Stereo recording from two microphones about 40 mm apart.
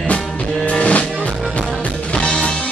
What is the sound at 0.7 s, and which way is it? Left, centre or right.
Music, left.